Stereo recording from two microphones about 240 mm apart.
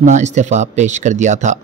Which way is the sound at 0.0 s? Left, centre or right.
Right.